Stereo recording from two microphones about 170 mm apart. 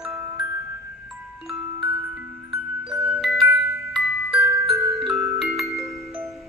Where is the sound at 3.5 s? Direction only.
15° right (ahead or behind).